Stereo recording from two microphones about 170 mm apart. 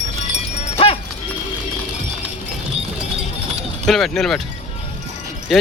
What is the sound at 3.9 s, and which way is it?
Speech, centre (ahead or behind).